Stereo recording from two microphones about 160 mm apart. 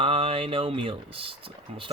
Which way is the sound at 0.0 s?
35° right (ahead or behind).